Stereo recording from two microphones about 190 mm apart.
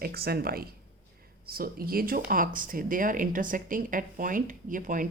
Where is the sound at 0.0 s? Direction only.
55° right (ahead or behind).